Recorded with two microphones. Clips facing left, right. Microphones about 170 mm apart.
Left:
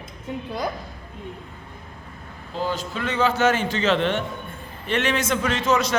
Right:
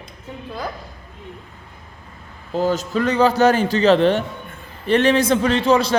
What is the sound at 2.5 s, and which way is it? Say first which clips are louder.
A man's voice: right 8 dB; 45° right (ahead or behind).